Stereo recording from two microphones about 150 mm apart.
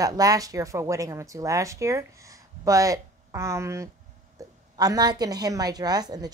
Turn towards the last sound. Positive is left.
turn(degrees=-25)  # may be behind; listen again after turning